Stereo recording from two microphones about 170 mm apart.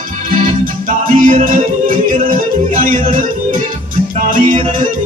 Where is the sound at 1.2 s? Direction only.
50° right (ahead or behind).